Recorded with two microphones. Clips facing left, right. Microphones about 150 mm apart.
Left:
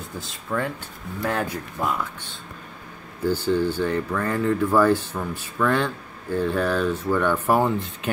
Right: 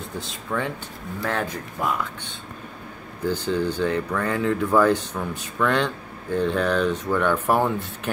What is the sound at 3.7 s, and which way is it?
Speech, 5° left (ahead or behind).